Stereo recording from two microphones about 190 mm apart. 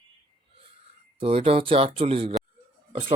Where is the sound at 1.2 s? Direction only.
30° right (ahead or behind).